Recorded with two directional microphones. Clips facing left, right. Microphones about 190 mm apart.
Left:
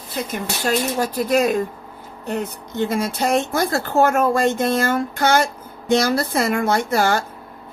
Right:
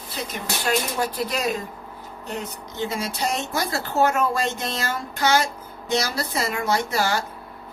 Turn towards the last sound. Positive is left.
turn(degrees=50)  # may be behind; listen again after turning